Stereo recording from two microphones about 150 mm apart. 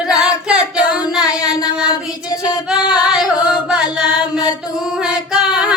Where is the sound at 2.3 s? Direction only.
25° left (ahead or behind).